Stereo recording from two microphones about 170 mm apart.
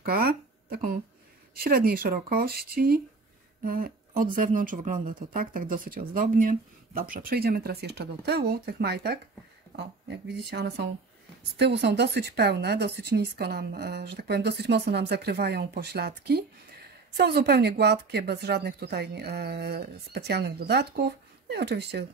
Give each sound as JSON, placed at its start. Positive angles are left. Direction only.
{"t": 0.0, "sound": "speech", "side_deg": -60}
{"t": 9.7, "sound": "speech", "side_deg": -80}